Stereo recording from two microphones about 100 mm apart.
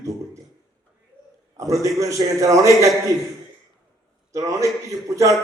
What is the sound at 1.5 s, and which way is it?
A man's voice, 30° right (ahead or behind).